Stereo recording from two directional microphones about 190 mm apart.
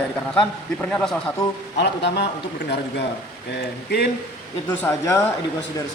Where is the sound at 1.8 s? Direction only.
65° left (ahead or behind).